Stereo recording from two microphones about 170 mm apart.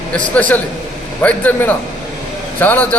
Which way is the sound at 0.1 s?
10° left (ahead or behind).